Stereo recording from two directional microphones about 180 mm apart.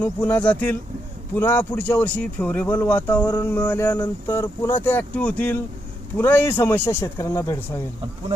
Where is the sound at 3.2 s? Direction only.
25° left (ahead or behind).